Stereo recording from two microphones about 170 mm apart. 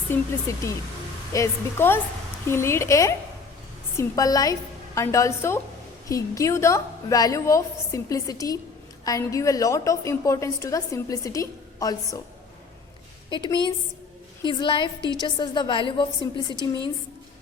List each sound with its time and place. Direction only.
0.1 s a woman's voice: 15° left (ahead or behind)
13.3 s a woman's voice: 25° left (ahead or behind)